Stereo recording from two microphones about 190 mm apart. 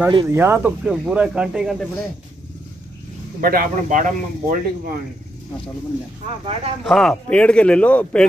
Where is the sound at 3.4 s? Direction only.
50° right (ahead or behind).